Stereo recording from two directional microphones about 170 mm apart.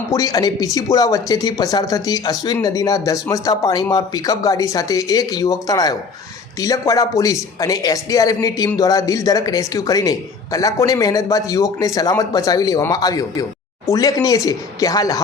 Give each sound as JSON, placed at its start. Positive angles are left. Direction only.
{"t": 0.1, "sound": "speech", "side_deg": 20}